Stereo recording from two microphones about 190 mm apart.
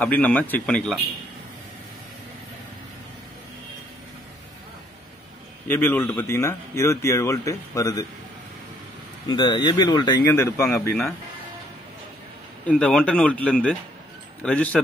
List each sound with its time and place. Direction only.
0.0 s speech: 5° left (ahead or behind)
5.7 s speech: 10° left (ahead or behind)
9.3 s speech: 25° left (ahead or behind)
12.6 s speech: 5° left (ahead or behind)